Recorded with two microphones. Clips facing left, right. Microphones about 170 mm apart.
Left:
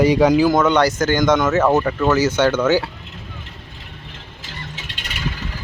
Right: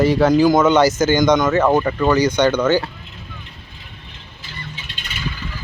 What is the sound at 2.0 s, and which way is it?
Speech, 5° left (ahead or behind).